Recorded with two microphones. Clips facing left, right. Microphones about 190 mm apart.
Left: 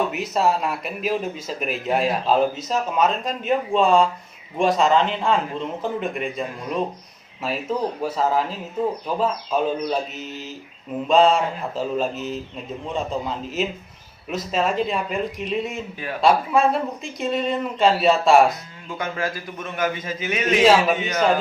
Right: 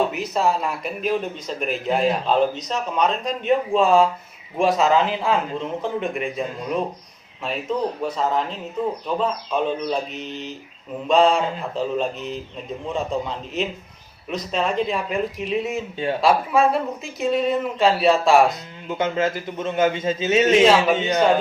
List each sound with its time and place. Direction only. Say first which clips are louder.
0.1 s speech: even; centre (ahead or behind)
16.0 s a man's voice: right 6 dB; 25° right (ahead or behind)
16.2 s speech: left 1 dB; centre (ahead or behind)
18.9 s a man's voice: right 5 dB; 20° right (ahead or behind)